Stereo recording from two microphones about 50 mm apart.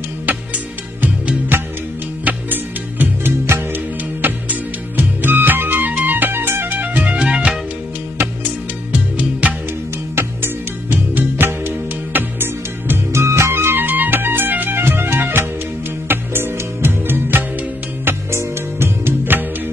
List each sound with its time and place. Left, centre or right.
1.5 s music: right
3.4 s music: right
4.2 s music: right
6.8 s music: right
8.9 s music: right
10.1 s music: right
13.1 s music: right
13.8 s music: right
14.8 s music: right
18.3 s music: right